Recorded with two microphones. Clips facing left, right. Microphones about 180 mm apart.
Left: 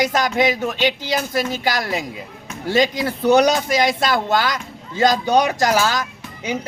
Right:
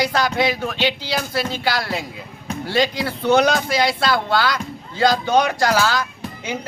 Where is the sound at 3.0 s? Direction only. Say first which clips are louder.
Left 2 dB; 15° left (ahead or behind).